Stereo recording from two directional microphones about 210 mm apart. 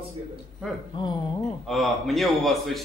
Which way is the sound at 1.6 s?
Centre (ahead or behind).